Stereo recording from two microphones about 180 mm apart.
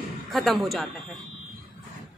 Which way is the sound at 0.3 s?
Centre (ahead or behind).